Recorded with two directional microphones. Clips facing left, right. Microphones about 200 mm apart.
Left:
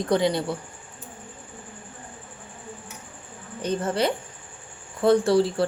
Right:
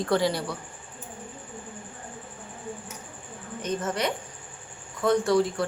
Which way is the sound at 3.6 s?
30° left (ahead or behind).